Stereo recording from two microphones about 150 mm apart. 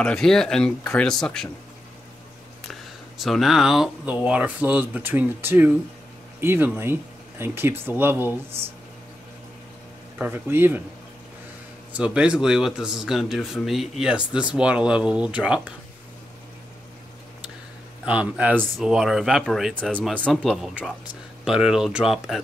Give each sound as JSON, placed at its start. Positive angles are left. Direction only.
{"t": 0.0, "sound": "speech", "side_deg": 5}
{"t": 2.7, "sound": "speech", "side_deg": 0}
{"t": 10.1, "sound": "speech", "side_deg": -10}
{"t": 12.0, "sound": "speech", "side_deg": -5}
{"t": 18.0, "sound": "speech", "side_deg": -10}